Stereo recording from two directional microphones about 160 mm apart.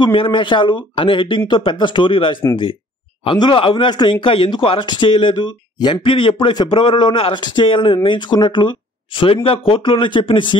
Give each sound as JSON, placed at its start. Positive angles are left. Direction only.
{"t": 0.0, "sound": "speech", "side_deg": 30}